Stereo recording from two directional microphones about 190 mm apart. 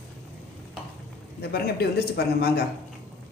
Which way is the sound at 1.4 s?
55° left (ahead or behind).